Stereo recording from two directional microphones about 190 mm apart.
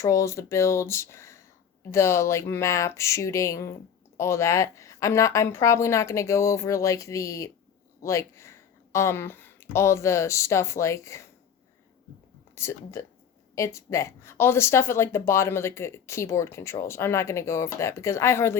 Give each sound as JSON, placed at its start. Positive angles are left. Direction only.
{"t": 0.0, "sound": "speech", "side_deg": 15}
{"t": 12.5, "sound": "speech", "side_deg": 15}